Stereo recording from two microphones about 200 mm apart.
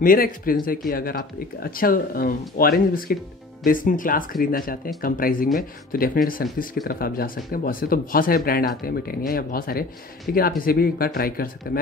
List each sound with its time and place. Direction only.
0.0 s speech: 45° left (ahead or behind)